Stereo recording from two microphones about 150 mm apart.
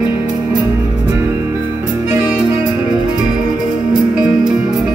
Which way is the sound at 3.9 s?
5° right (ahead or behind).